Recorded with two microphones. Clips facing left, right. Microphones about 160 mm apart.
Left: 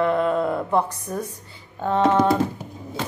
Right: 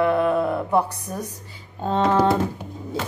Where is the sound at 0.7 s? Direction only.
10° right (ahead or behind).